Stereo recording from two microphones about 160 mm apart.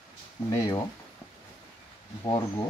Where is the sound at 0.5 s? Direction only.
20° left (ahead or behind).